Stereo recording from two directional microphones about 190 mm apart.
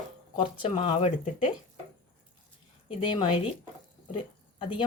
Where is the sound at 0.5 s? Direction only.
25° left (ahead or behind).